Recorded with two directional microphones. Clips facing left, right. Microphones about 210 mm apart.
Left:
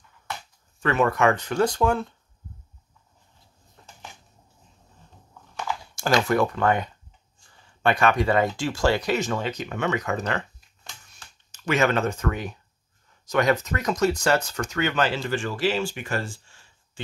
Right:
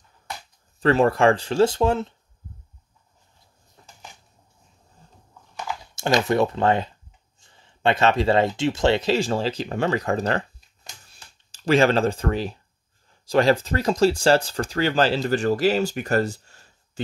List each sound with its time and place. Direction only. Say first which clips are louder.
0.7 s speech: right 4 dB; 35° right (ahead or behind)
5.9 s speech: right 1 dB; 20° right (ahead or behind)
11.1 s a sound: even; 35° right (ahead or behind)
13.1 s speech: right 3 dB; 30° right (ahead or behind)